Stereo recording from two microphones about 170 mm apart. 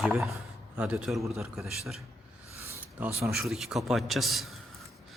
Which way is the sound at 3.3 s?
Centre (ahead or behind).